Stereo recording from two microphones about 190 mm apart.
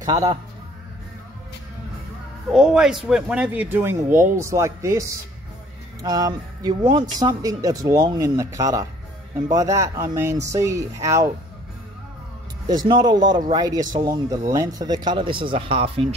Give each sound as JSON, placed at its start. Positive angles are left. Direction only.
{"t": 0.0, "sound": "speech", "side_deg": -20}
{"t": 2.5, "sound": "speech", "side_deg": -5}
{"t": 6.0, "sound": "speech", "side_deg": -20}
{"t": 12.6, "sound": "speech", "side_deg": -20}